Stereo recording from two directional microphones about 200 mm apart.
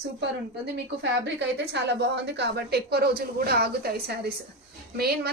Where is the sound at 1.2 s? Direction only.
60° right (ahead or behind).